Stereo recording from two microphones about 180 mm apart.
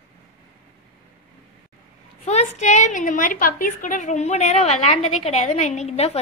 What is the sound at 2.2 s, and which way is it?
A woman's voice, 35° left (ahead or behind).